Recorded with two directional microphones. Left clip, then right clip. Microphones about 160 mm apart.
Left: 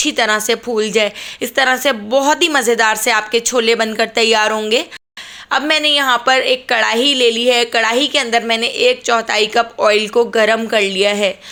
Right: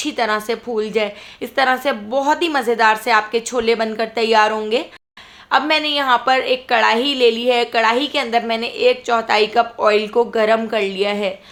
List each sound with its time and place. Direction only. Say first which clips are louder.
0.0 s a woman's voice: left 4 dB; 20° left (ahead or behind)